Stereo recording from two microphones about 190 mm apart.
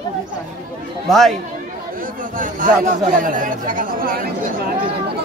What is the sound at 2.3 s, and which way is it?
Speech, 45° right (ahead or behind).